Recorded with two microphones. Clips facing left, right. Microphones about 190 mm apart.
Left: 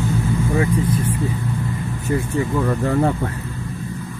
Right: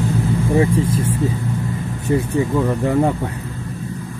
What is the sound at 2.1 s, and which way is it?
Speech, 20° right (ahead or behind).